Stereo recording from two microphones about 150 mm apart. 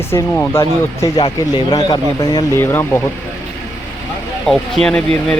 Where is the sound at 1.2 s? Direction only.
30° left (ahead or behind).